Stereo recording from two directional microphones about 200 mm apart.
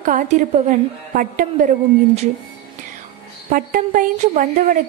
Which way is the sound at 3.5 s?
45° right (ahead or behind).